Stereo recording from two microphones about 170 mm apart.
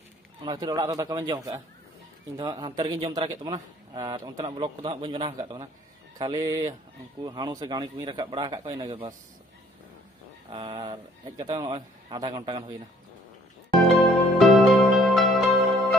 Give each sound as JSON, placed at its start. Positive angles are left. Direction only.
{"t": 0.4, "sound": "a man's voice", "side_deg": -25}
{"t": 10.5, "sound": "a man's voice", "side_deg": -25}
{"t": 13.9, "sound": "music", "side_deg": 0}